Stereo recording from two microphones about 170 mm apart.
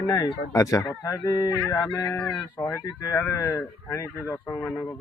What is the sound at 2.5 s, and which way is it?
Speech, 20° left (ahead or behind).